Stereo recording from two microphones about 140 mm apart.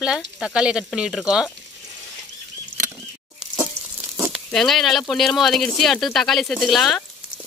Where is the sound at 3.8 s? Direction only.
20° right (ahead or behind).